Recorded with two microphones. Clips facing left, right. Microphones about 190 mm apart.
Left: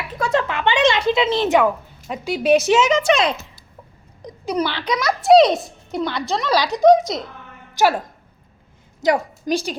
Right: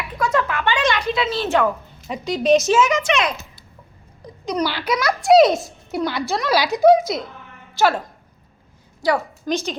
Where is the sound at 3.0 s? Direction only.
35° left (ahead or behind).